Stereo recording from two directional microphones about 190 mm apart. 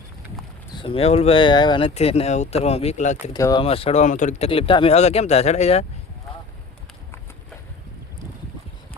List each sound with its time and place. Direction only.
0.8 s speech: 30° left (ahead or behind)
3.3 s speech: 20° left (ahead or behind); by 5.8 s 35° left (ahead or behind)